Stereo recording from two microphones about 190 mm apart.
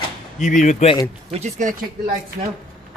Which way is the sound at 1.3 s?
40° right (ahead or behind).